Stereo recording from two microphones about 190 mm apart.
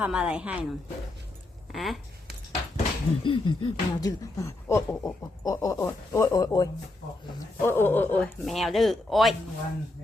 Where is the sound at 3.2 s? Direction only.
25° left (ahead or behind).